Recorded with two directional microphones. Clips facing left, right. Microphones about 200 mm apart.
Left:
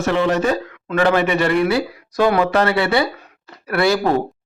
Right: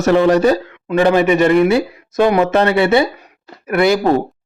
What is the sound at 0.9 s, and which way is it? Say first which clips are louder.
A man's voice: right 4 dB; 20° right (ahead or behind).